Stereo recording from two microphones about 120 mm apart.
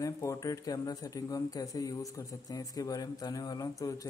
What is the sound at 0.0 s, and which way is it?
A man's voice, 25° left (ahead or behind).